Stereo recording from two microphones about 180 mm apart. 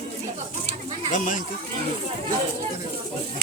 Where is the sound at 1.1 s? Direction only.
45° left (ahead or behind).